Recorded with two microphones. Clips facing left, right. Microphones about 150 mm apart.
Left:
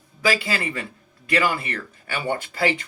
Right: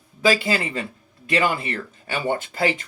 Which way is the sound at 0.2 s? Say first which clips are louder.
Right 3 dB; 20° right (ahead or behind).